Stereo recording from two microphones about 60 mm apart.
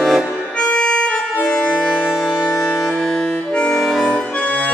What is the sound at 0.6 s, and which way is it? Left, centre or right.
Harmonica, left.